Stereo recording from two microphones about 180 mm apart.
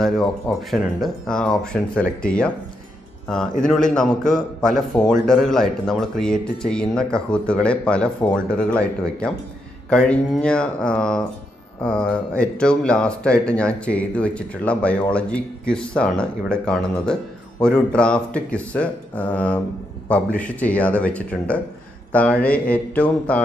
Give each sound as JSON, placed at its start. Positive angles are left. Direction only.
{"t": 0.0, "sound": "speech", "side_deg": 0}
{"t": 3.6, "sound": "speech", "side_deg": 5}
{"t": 8.3, "sound": "mantra", "side_deg": 5}
{"t": 9.8, "sound": "speech", "side_deg": 5}
{"t": 20.3, "sound": "mantra", "side_deg": 10}